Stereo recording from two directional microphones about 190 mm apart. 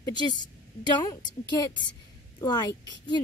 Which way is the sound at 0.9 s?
20° left (ahead or behind).